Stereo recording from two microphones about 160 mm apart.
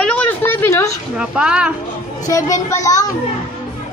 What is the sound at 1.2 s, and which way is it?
Speech, 5° right (ahead or behind).